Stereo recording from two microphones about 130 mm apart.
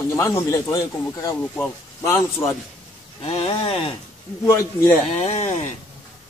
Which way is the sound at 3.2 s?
45° left (ahead or behind).